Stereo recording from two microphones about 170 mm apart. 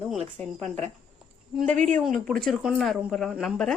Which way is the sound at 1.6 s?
45° right (ahead or behind).